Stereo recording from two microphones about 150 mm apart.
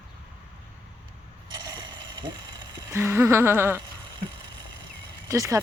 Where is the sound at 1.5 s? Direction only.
30° right (ahead or behind).